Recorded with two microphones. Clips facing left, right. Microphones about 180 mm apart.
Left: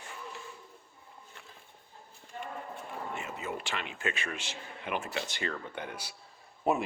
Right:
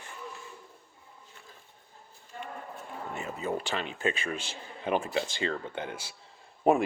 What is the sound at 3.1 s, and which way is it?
Speech, 35° right (ahead or behind).